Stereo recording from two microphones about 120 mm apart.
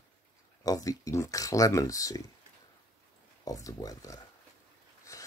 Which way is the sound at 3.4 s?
30° left (ahead or behind).